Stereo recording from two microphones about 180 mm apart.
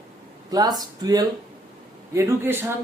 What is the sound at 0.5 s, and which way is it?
A woman's voice, 20° right (ahead or behind).